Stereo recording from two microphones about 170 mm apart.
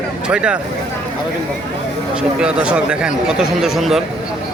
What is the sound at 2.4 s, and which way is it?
Speech, 5° right (ahead or behind).